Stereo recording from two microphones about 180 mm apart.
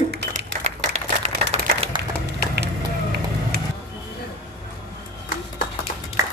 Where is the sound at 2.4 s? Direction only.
65° right (ahead or behind).